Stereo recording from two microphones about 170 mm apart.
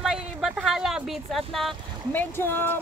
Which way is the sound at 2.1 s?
10° left (ahead or behind).